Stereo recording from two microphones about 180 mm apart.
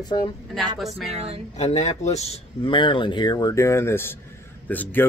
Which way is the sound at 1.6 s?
40° left (ahead or behind).